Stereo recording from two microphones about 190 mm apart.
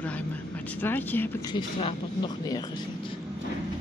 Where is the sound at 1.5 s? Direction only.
25° left (ahead or behind).